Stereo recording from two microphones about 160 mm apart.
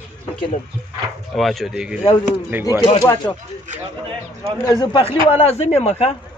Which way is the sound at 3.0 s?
20° left (ahead or behind).